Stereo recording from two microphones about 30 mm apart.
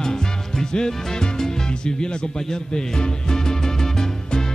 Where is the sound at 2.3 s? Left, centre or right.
Left.